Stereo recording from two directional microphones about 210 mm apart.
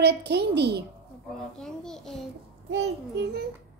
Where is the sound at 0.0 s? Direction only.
50° right (ahead or behind).